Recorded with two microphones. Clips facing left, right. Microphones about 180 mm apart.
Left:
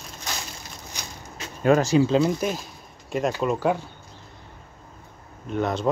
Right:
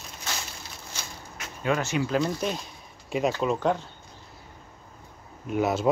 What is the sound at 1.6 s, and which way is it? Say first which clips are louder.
Speech: left 8 dB; 40° left (ahead or behind).